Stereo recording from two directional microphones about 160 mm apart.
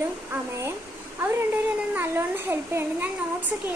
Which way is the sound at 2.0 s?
15° right (ahead or behind).